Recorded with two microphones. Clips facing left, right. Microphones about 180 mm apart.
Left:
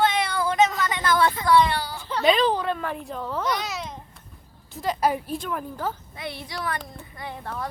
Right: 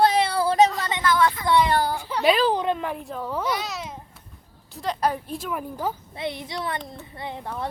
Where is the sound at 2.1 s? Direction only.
10° right (ahead or behind).